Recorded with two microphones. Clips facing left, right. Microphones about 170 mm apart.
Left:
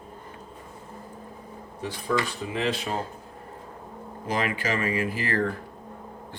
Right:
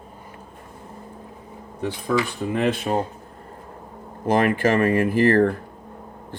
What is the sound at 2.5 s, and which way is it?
Speech, 55° right (ahead or behind).